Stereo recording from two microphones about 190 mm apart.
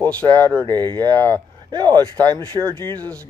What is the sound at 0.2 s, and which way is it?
Speech, 20° right (ahead or behind).